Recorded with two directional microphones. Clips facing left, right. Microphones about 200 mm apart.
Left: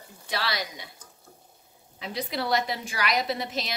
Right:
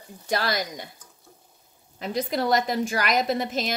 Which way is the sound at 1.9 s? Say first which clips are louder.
Right 5 dB; 45° right (ahead or behind).